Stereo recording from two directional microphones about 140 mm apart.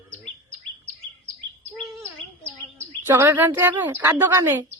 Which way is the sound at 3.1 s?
15° right (ahead or behind).